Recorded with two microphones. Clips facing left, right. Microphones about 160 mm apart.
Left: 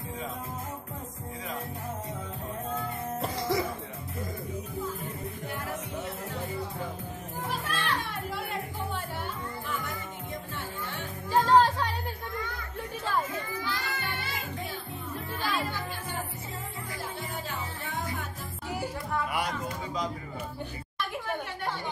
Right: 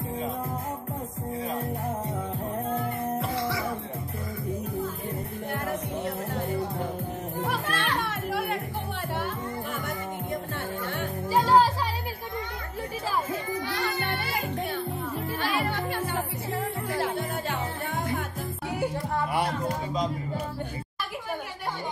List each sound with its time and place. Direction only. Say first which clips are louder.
5.5 s music: right 7 dB; 55° right (ahead or behind)
7.4 s music: right 2 dB; 70° right (ahead or behind)
11.2 s music: right 1 dB; 10° right (ahead or behind)
13.7 s music: right 5 dB; 65° right (ahead or behind)
15.4 s music: right 3 dB; 65° right (ahead or behind)
19.1 s music: right 2 dB; 30° right (ahead or behind)